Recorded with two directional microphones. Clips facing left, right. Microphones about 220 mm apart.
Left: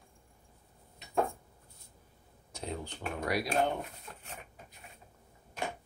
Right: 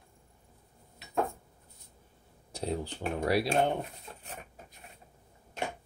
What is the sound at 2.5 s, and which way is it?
Speech, 35° right (ahead or behind).